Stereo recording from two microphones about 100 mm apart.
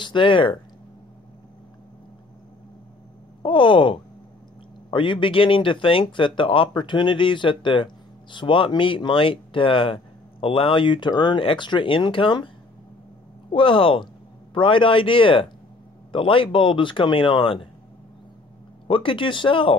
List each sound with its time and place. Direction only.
0.0 s speech: 55° left (ahead or behind)
3.4 s speech: 60° left (ahead or behind)
13.5 s speech: 60° left (ahead or behind)
18.9 s speech: 60° left (ahead or behind)